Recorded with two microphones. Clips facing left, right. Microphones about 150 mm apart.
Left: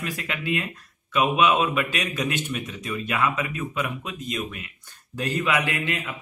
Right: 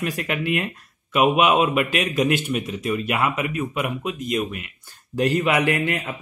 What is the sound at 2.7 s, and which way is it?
Speech, 40° right (ahead or behind).